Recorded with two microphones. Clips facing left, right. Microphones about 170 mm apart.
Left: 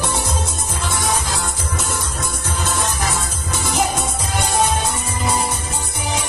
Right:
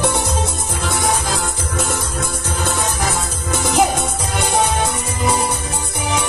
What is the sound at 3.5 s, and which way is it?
Music, 55° right (ahead or behind).